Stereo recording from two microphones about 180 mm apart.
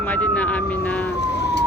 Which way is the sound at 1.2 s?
70° left (ahead or behind).